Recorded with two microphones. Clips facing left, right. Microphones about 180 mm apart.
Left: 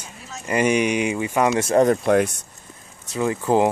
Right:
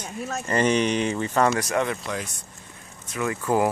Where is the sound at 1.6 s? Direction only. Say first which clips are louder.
Left 8 dB; 30° left (ahead or behind).